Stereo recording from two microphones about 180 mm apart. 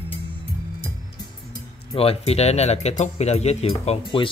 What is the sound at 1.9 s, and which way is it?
Speech, 30° left (ahead or behind).